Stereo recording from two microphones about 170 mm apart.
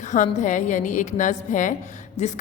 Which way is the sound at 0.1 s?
45° left (ahead or behind).